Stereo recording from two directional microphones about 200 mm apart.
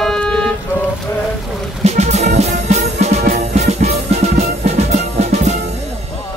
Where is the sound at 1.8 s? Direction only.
35° right (ahead or behind).